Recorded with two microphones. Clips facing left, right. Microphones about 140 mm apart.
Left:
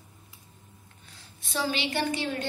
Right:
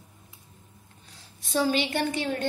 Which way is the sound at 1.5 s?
45° right (ahead or behind).